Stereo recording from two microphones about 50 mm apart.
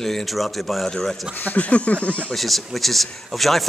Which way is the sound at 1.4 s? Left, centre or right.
Left.